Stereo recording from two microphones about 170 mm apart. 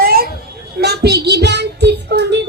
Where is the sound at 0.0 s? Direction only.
60° right (ahead or behind).